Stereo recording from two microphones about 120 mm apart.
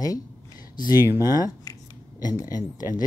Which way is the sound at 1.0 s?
20° right (ahead or behind).